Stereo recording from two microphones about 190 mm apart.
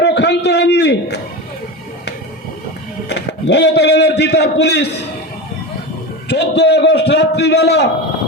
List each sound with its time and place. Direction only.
0.0 s a sound: 65° left (ahead or behind)
3.1 s a man's voice: 65° left (ahead or behind)
6.2 s a man's voice: 60° left (ahead or behind)